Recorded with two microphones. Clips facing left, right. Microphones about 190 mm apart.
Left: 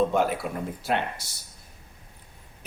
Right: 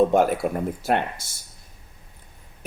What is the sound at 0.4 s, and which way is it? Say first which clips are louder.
Speech: right 6 dB; 55° right (ahead or behind).